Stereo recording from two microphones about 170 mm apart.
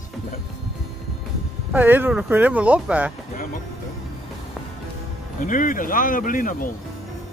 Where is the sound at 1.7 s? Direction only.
10° right (ahead or behind).